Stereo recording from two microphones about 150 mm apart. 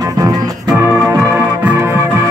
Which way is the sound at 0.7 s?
20° right (ahead or behind).